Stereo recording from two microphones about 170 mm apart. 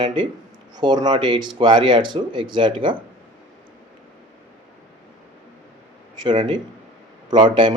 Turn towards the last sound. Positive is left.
turn(degrees=-30)  # may be behind; listen again after turning